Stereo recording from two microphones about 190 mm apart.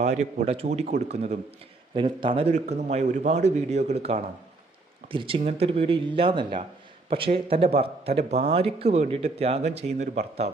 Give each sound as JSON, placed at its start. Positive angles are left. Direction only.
{"t": 0.0, "sound": "speech", "side_deg": -35}